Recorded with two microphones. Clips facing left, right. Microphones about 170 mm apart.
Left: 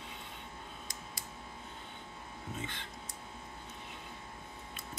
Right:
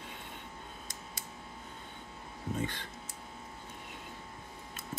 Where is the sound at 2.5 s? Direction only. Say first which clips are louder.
Right 7 dB; 40° right (ahead or behind).